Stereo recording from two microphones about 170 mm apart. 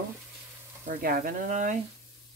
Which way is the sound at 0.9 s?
55° right (ahead or behind).